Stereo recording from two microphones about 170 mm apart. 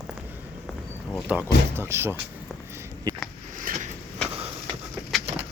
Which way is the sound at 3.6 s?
50° right (ahead or behind).